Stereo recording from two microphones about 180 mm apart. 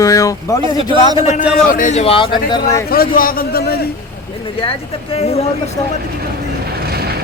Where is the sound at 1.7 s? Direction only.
45° left (ahead or behind); by 2.8 s 25° left (ahead or behind).